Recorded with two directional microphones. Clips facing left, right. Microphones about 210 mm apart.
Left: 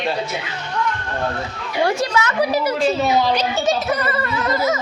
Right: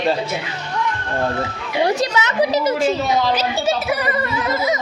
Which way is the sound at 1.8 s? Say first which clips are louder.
Even; 20° right (ahead or behind).